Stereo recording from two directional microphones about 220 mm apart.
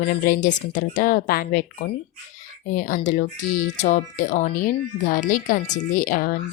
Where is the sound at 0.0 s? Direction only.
40° left (ahead or behind).